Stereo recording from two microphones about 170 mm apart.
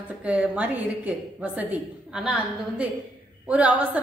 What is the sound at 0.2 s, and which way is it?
A woman's voice, 10° right (ahead or behind).